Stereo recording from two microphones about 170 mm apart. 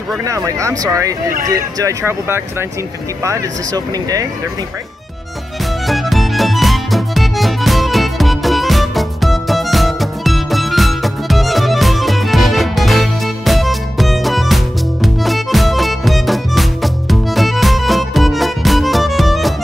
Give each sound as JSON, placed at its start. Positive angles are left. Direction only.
{"t": 0.2, "sound": "speech", "side_deg": -20}
{"t": 5.9, "sound": "music", "side_deg": 0}